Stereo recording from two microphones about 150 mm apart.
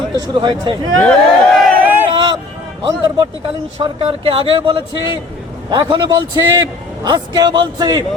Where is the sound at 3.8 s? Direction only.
35° right (ahead or behind).